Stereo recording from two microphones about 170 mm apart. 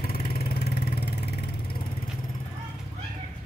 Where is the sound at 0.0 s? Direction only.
65° left (ahead or behind).